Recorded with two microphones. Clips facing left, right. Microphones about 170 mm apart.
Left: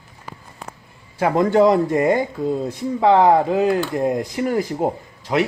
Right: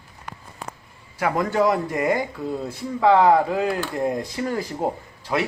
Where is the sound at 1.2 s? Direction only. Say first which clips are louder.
Left 6 dB; 25° left (ahead or behind).